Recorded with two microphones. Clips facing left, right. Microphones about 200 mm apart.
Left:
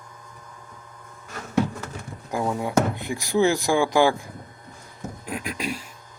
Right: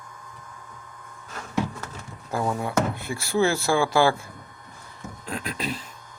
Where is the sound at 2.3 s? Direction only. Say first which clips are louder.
Left 2 dB; 15° left (ahead or behind).